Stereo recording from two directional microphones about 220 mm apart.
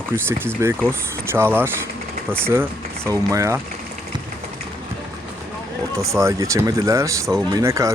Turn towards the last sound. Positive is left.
turn(degrees=-15)  # may be behind; listen again after turning